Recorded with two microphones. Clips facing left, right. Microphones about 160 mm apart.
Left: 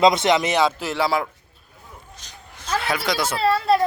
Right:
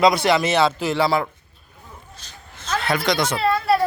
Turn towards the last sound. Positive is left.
turn(degrees=30)  # may be behind; listen again after turning